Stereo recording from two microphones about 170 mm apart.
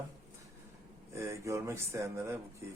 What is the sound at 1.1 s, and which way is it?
Speech, 15° right (ahead or behind).